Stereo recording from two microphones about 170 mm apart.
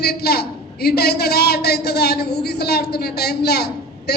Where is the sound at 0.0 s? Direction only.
70° left (ahead or behind).